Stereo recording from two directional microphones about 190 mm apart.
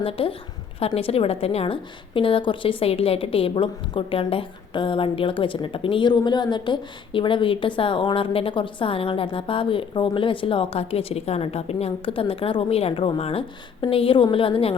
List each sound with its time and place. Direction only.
0.0 s a woman's voice: 30° left (ahead or behind)